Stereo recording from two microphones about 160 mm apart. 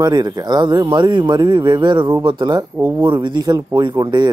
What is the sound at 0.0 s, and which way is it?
Speech, 25° right (ahead or behind).